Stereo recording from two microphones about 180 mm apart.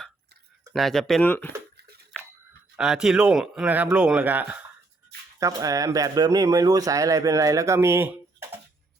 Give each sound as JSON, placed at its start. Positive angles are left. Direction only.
{"t": 0.7, "sound": "a man's voice", "side_deg": 0}
{"t": 2.1, "sound": "a sound", "side_deg": 0}
{"t": 2.7, "sound": "a man's voice", "side_deg": -5}
{"t": 5.4, "sound": "speech", "side_deg": -20}